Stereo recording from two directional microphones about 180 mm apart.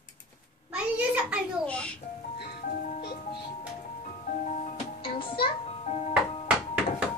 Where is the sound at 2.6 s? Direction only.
50° left (ahead or behind).